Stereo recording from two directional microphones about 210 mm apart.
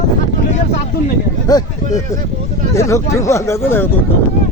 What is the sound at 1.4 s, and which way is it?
Speech, 15° left (ahead or behind).